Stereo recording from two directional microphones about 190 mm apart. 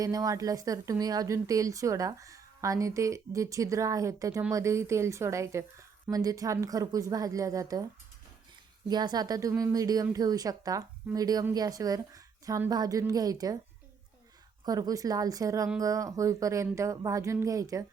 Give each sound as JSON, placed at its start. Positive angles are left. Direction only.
{"t": 0.0, "sound": "a woman's voice", "side_deg": -20}
{"t": 8.9, "sound": "speech", "side_deg": -20}
{"t": 14.6, "sound": "a woman's voice", "side_deg": -20}